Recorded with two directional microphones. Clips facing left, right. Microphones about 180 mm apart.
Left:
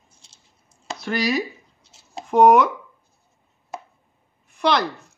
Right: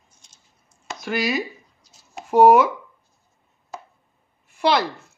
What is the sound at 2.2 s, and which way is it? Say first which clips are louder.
Speech: right 1 dB; 5° right (ahead or behind).